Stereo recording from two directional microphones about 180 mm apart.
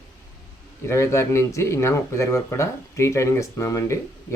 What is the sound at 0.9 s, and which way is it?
Speech, 15° left (ahead or behind).